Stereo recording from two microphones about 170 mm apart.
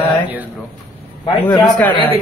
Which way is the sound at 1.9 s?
30° left (ahead or behind).